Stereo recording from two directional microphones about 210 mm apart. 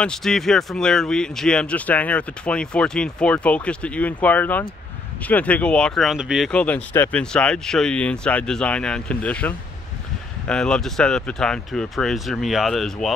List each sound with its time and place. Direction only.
0.0 s speech: 5° left (ahead or behind)